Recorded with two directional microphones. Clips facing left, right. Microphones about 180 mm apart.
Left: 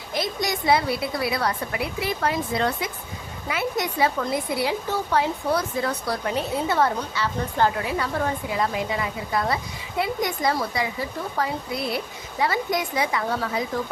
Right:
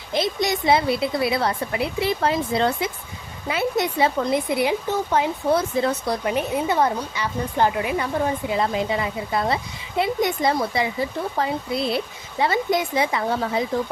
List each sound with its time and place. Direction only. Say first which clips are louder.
0.1 s a woman's voice: right 4 dB; 25° right (ahead or behind)